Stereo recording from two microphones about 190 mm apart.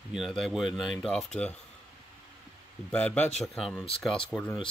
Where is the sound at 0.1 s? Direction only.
Centre (ahead or behind).